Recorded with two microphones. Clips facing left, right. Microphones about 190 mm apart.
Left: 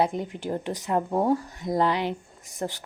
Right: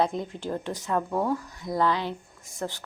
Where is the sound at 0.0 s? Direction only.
15° left (ahead or behind).